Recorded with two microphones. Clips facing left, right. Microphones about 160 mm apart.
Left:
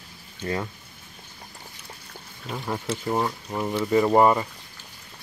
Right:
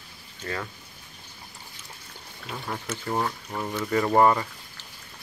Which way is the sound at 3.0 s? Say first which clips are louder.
Even; 15° left (ahead or behind).